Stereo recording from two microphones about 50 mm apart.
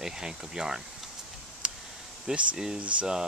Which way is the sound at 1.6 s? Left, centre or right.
Right.